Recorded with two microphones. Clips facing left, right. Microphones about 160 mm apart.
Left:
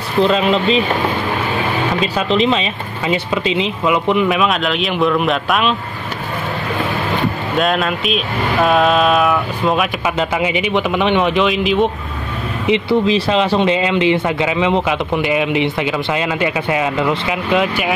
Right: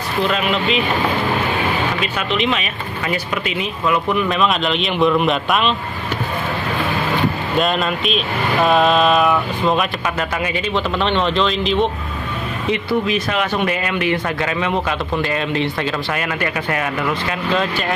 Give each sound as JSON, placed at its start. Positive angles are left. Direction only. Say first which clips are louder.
{"t": 0.2, "sound": "speech", "louder": "left 6 dB", "side_deg": 30}
{"t": 2.0, "sound": "speech", "louder": "left 5 dB", "side_deg": 35}
{"t": 4.3, "sound": "speech", "louder": "left 2 dB", "side_deg": 5}
{"t": 7.5, "sound": "speech", "louder": "left 3 dB", "side_deg": 0}
{"t": 10.1, "sound": "speech", "louder": "left 4 dB", "side_deg": 15}
{"t": 12.6, "sound": "speech", "louder": "left 5 dB", "side_deg": 25}